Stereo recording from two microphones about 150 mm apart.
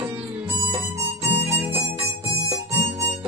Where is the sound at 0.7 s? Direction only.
35° right (ahead or behind).